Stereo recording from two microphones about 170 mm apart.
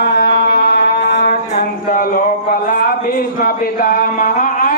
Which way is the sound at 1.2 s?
55° left (ahead or behind).